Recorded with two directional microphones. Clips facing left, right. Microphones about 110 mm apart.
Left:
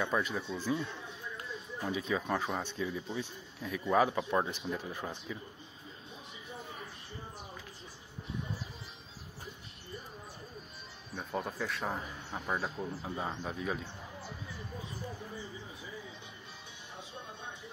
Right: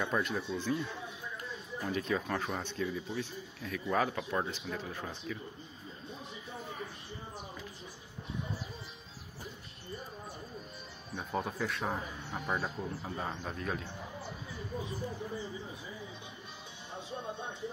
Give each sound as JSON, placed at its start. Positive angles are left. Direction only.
{"t": 0.0, "sound": "speech", "side_deg": 0}
{"t": 11.1, "sound": "speech", "side_deg": 0}